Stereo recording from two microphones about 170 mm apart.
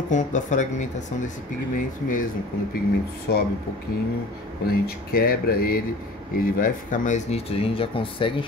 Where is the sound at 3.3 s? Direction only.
65° left (ahead or behind).